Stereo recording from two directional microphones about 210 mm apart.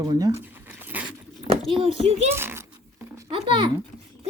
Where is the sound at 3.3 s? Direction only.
25° right (ahead or behind).